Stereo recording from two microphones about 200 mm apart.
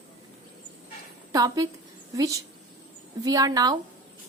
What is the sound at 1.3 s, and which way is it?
A woman's voice, 15° right (ahead or behind).